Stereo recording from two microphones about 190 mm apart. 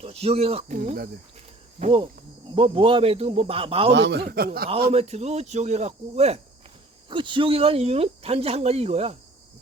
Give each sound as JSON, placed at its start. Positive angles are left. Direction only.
{"t": 0.0, "sound": "speech", "side_deg": -30}
{"t": 2.6, "sound": "speech", "side_deg": -25}
{"t": 3.9, "sound": "a man's voice", "side_deg": -65}
{"t": 4.9, "sound": "speech", "side_deg": -35}